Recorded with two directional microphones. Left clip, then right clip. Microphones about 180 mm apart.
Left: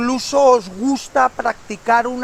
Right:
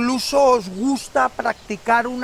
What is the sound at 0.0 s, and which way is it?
Speech, 40° right (ahead or behind).